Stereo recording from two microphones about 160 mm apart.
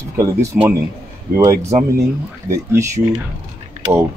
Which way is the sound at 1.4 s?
20° right (ahead or behind).